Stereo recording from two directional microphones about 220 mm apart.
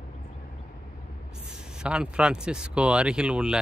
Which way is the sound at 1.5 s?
5° right (ahead or behind).